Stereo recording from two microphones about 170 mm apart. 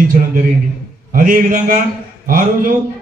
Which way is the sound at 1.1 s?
55° right (ahead or behind).